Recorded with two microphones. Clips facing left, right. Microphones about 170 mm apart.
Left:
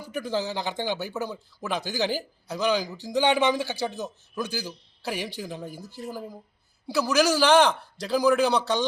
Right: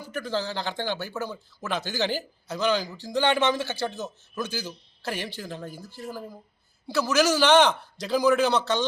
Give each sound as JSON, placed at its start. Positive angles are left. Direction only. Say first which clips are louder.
{"t": 0.0, "sound": "a man's voice", "louder": "left 1 dB", "side_deg": 15}